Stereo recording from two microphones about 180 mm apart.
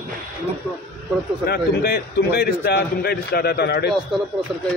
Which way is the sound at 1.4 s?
60° left (ahead or behind).